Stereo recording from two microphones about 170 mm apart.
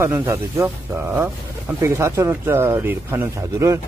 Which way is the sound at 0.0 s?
15° right (ahead or behind).